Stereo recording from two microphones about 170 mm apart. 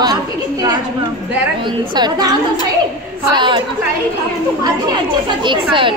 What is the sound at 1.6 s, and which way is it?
Speech, 25° right (ahead or behind).